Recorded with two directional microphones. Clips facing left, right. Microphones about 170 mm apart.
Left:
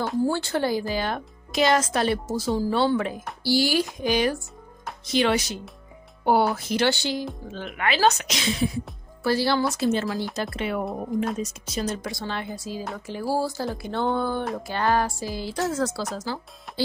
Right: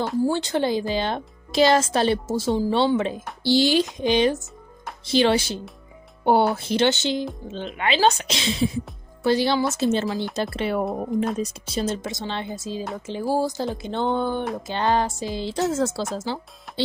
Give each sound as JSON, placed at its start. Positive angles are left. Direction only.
{"t": 0.3, "sound": "speech", "side_deg": -20}